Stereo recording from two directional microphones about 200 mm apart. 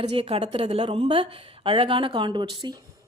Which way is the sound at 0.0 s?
30° right (ahead or behind).